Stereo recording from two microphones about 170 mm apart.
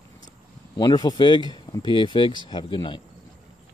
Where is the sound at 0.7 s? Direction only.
25° left (ahead or behind).